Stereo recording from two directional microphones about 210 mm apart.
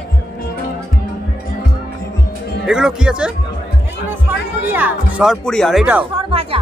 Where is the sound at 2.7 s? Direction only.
5° right (ahead or behind).